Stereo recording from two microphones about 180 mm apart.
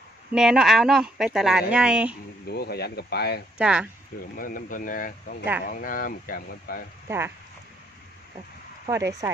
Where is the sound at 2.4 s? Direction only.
60° left (ahead or behind).